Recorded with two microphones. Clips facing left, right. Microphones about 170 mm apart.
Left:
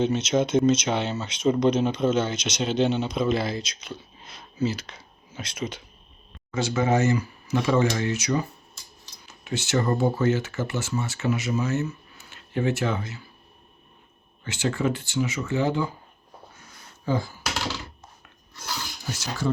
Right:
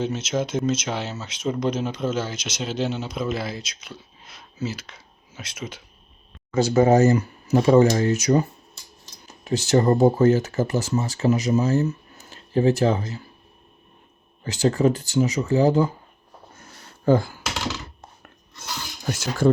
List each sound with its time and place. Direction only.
0.0 s speech: 5° right (ahead or behind)
6.5 s speech: 40° right (ahead or behind)
14.4 s speech: 35° right (ahead or behind)
17.1 s speech: 55° right (ahead or behind)
19.0 s speech: 50° right (ahead or behind)